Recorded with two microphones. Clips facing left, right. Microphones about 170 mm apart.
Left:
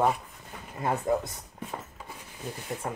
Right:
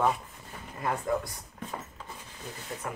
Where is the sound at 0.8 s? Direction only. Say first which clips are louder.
Left 3 dB; 25° left (ahead or behind).